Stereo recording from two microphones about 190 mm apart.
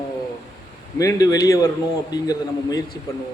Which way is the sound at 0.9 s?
20° left (ahead or behind).